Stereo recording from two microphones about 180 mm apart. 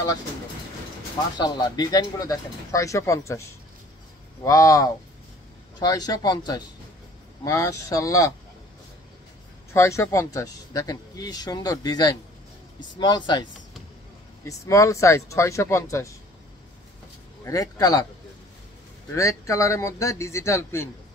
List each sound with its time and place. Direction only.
1.4 s speech: 20° left (ahead or behind)
9.8 s speech: 15° left (ahead or behind)
17.5 s speech: 20° left (ahead or behind)
19.1 s speech: 15° left (ahead or behind)